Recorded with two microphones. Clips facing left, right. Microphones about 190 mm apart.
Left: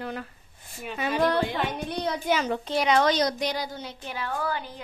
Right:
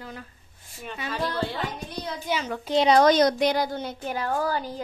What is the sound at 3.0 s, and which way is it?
A woman's voice, 50° right (ahead or behind).